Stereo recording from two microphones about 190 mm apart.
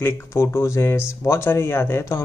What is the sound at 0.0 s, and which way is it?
Speech, 15° left (ahead or behind).